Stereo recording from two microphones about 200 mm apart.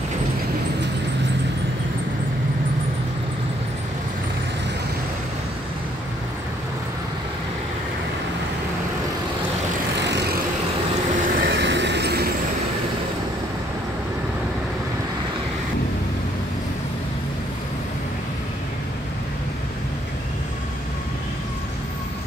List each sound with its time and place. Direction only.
10.0 s vehicle: 60° right (ahead or behind)
11.2 s train: 50° right (ahead or behind)